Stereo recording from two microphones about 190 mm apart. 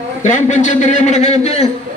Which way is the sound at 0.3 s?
40° left (ahead or behind).